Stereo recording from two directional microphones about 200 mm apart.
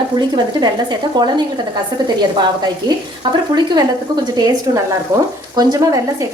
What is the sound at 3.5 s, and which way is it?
A woman's voice, 20° right (ahead or behind).